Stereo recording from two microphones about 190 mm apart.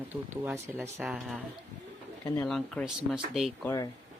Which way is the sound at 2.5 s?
Centre (ahead or behind).